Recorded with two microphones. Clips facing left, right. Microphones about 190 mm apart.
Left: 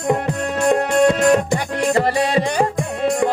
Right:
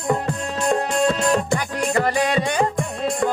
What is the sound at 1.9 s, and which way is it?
Music, 30° left (ahead or behind).